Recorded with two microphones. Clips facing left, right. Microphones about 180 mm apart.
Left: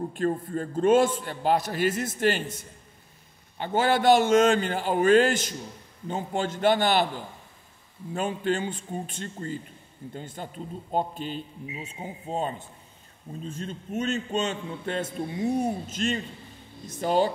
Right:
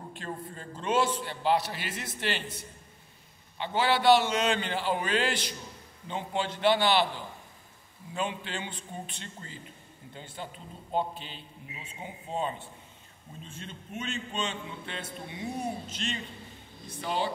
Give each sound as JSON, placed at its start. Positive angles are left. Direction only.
{"t": 0.1, "sound": "a man's voice", "side_deg": 50}
{"t": 8.1, "sound": "a man's voice", "side_deg": 45}